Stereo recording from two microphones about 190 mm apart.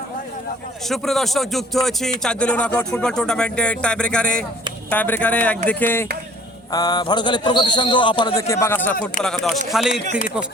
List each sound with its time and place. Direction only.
0.9 s a man's voice: centre (ahead or behind)